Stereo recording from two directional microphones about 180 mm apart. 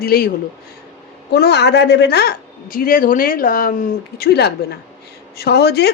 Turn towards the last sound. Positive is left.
turn(degrees=65)  # may be behind; listen again after turning